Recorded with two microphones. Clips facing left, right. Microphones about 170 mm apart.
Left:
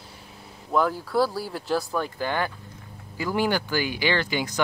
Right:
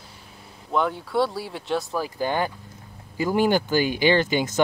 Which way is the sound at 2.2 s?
15° right (ahead or behind).